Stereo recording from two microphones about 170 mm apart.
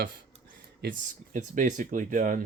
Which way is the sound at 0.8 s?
50° right (ahead or behind).